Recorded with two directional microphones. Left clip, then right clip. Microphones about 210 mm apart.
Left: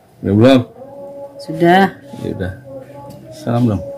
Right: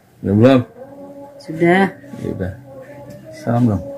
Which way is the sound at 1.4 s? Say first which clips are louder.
Left 3 dB; 20° left (ahead or behind).